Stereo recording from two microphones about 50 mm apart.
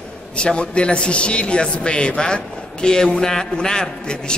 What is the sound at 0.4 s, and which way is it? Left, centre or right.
A man's voice, left.